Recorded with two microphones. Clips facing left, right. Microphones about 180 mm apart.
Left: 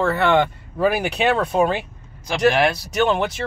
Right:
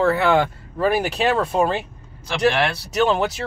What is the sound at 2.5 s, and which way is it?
Speech, 15° left (ahead or behind).